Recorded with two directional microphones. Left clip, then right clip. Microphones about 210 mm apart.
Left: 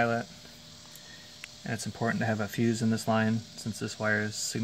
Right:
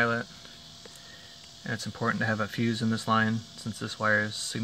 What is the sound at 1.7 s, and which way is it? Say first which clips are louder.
Speech: right 2 dB; 10° left (ahead or behind).